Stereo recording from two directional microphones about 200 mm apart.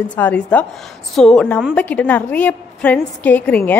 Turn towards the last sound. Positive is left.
turn(degrees=10)  # may be behind; listen again after turning